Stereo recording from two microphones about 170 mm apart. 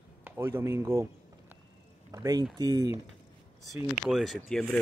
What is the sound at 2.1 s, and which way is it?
Speech, 20° right (ahead or behind).